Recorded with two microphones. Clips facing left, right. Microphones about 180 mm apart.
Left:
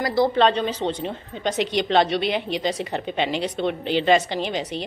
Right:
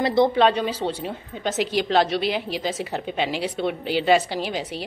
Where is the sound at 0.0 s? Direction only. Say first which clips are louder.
Right 2 dB; 20° right (ahead or behind).